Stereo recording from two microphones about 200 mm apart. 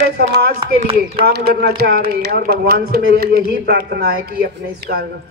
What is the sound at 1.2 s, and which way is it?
A man's voice, 50° right (ahead or behind).